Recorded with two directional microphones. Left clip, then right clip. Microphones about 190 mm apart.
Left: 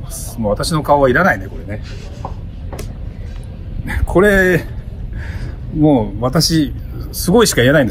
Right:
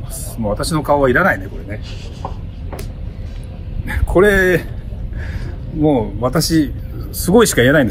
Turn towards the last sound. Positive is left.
turn(degrees=15)  # may be behind; listen again after turning